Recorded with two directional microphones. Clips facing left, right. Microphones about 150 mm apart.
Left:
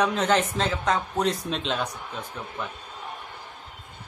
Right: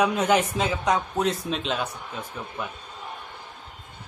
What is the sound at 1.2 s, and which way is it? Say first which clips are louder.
A man's voice: even; centre (ahead or behind).